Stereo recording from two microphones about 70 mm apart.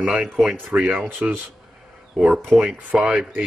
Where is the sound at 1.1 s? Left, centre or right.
Right.